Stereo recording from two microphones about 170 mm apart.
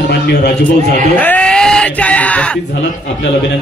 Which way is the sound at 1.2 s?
10° left (ahead or behind).